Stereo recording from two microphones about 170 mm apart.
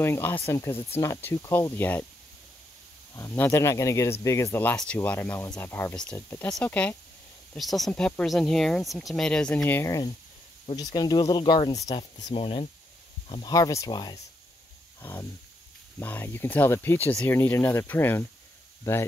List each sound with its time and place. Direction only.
0.0 s speech: 15° left (ahead or behind)
3.2 s speech: 15° left (ahead or behind)
12.0 s speech: 40° left (ahead or behind)
13.3 s speech: 25° left (ahead or behind)